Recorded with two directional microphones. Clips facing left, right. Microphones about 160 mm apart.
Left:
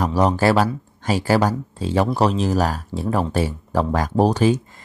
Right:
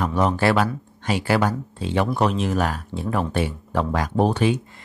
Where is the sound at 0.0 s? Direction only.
35° left (ahead or behind).